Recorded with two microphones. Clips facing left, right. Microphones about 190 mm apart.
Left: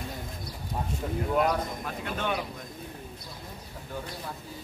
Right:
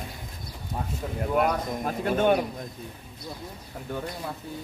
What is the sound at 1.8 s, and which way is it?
Speech, 45° right (ahead or behind).